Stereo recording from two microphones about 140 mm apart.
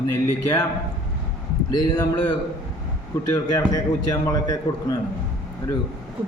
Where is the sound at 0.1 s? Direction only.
25° left (ahead or behind).